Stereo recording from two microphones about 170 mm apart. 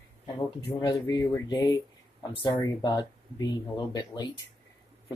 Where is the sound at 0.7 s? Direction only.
25° left (ahead or behind).